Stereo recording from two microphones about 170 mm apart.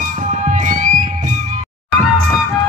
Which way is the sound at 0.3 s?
45° right (ahead or behind).